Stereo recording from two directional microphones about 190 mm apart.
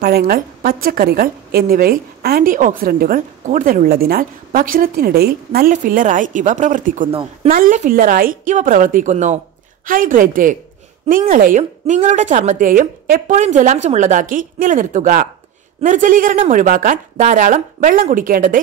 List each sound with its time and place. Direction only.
0.0 s a woman's voice: 55° right (ahead or behind)